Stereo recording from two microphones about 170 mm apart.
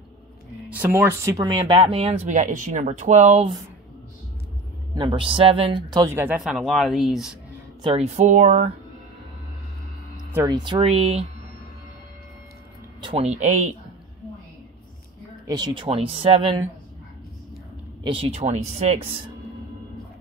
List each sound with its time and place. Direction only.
0.7 s speech: 15° right (ahead or behind); by 3.4 s 45° right (ahead or behind)
4.9 s speech: 30° right (ahead or behind)
5.9 s speech: 20° right (ahead or behind); by 7.3 s centre (ahead or behind)
7.8 s speech: 35° right (ahead or behind)
10.4 s speech: 25° right (ahead or behind)
13.0 s speech: 35° right (ahead or behind)
15.4 s speech: 25° right (ahead or behind)
18.0 s speech: 30° right (ahead or behind)